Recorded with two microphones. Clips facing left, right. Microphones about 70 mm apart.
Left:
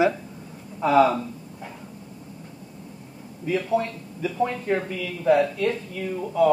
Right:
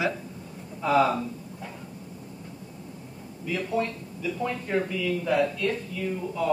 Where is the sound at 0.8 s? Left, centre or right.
Left.